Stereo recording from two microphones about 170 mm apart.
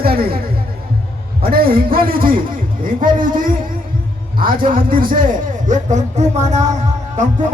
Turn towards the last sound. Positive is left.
turn(degrees=-45)  # may be behind; listen again after turning